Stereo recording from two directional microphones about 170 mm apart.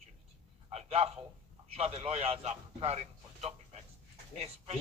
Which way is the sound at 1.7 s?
35° right (ahead or behind).